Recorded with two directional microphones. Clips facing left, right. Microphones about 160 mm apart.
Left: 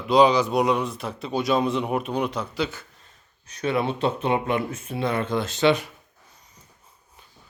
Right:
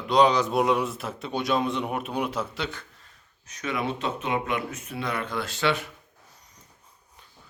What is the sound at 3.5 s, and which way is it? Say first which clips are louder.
Speech: left 5 dB; 30° left (ahead or behind).